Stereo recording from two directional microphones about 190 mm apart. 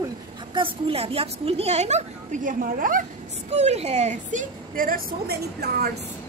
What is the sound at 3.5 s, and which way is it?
A woman's voice, 35° right (ahead or behind).